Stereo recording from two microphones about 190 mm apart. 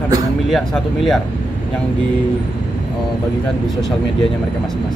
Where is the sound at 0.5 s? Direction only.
Centre (ahead or behind).